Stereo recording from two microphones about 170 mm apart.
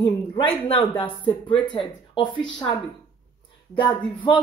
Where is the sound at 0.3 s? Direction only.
30° left (ahead or behind).